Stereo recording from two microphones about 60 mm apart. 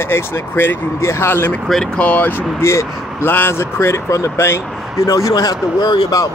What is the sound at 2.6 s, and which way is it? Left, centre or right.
Speech, left.